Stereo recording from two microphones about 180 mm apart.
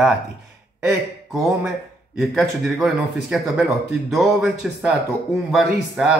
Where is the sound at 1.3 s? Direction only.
Centre (ahead or behind).